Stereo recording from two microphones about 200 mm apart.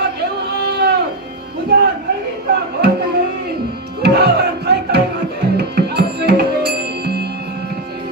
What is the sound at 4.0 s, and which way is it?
Music, 55° right (ahead or behind).